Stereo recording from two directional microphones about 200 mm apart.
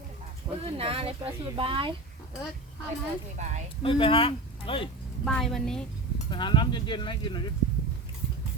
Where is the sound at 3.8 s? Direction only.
25° left (ahead or behind).